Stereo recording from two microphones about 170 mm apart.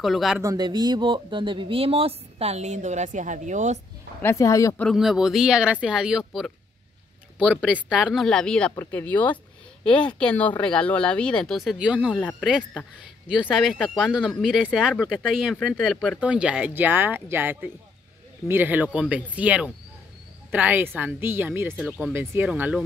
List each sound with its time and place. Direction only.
0.0 s speech: centre (ahead or behind)
0.4 s speech: 20° right (ahead or behind); by 3.8 s 45° right (ahead or behind)
4.2 s speech: 15° left (ahead or behind)
4.7 s speech: centre (ahead or behind)